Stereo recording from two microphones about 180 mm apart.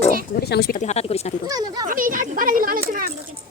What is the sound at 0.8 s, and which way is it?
Speech, 35° left (ahead or behind).